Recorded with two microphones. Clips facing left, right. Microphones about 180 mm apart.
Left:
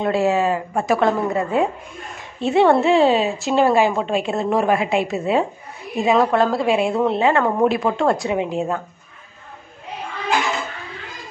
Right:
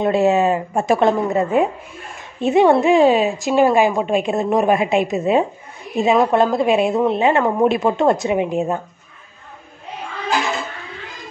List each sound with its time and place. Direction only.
0.0 s a woman's voice: 20° right (ahead or behind)